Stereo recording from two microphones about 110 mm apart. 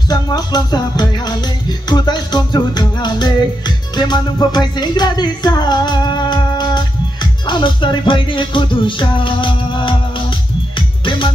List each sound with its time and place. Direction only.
0.1 s music: 40° left (ahead or behind)